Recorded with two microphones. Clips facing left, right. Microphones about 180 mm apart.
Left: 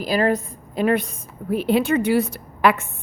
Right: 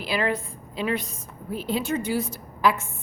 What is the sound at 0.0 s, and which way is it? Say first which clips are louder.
A woman's voice: left 6 dB; 40° left (ahead or behind).